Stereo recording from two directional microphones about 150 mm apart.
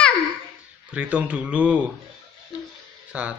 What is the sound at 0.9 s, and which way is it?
Speech, 10° right (ahead or behind).